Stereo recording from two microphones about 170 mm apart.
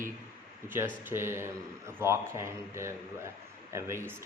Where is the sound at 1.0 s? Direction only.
15° right (ahead or behind).